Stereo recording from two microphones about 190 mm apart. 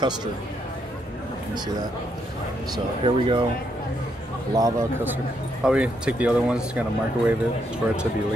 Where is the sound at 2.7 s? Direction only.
25° right (ahead or behind).